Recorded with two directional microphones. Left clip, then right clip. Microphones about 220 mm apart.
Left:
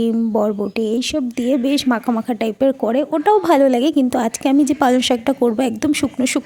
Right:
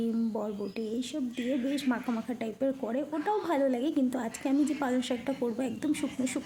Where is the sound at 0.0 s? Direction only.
40° left (ahead or behind).